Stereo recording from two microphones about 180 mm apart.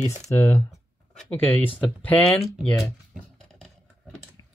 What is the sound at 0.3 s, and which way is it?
Speech, 15° left (ahead or behind).